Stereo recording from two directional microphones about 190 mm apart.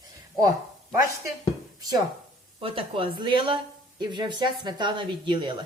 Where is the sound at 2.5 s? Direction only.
30° right (ahead or behind).